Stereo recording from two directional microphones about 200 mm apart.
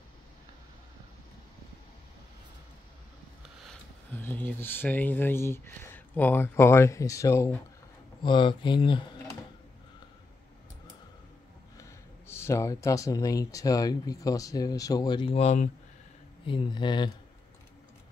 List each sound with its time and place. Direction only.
4.2 s speech: 10° left (ahead or behind); by 9.0 s 25° left (ahead or behind)
11.8 s speech: 15° left (ahead or behind); by 15.7 s 35° left (ahead or behind)
16.4 s speech: 25° left (ahead or behind)